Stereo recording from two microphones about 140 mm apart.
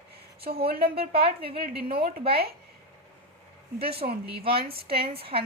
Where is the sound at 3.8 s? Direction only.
45° right (ahead or behind).